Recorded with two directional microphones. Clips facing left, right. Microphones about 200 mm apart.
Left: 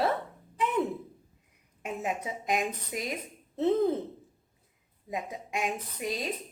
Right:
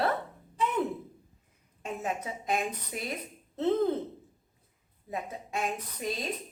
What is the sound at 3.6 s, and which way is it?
Speech, centre (ahead or behind).